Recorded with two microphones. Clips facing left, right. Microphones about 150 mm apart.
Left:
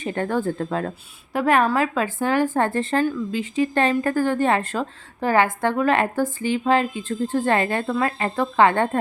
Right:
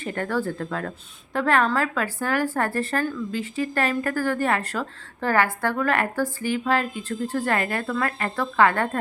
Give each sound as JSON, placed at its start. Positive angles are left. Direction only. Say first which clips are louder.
{"t": 0.0, "sound": "speech", "louder": "left 3 dB", "side_deg": 20}
{"t": 1.3, "sound": "speech", "louder": "left 3 dB", "side_deg": 15}